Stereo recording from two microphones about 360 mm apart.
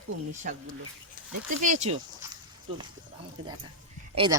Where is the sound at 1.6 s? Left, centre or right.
Centre.